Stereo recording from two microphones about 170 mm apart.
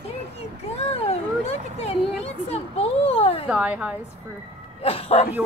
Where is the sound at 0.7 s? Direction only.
35° left (ahead or behind).